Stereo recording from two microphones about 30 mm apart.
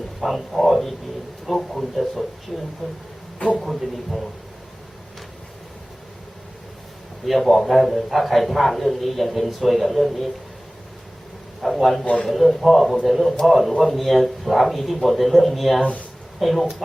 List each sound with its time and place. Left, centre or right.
0.2 s a man's voice: centre
7.3 s a man's voice: centre
11.6 s a man's voice: centre
15.8 s speech: left
16.4 s a man's voice: centre